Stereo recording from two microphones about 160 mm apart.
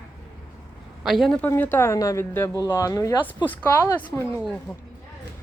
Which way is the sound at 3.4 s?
10° left (ahead or behind).